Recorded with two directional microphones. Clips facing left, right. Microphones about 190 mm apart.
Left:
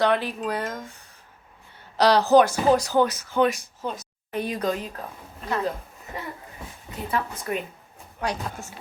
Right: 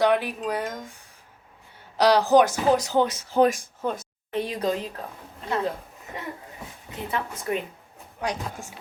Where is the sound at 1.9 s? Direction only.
10° right (ahead or behind); by 3.5 s 30° right (ahead or behind).